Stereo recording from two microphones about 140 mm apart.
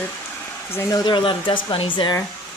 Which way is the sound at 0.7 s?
30° left (ahead or behind).